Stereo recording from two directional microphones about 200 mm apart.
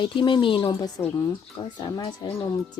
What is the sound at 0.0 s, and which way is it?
Speech, 25° left (ahead or behind).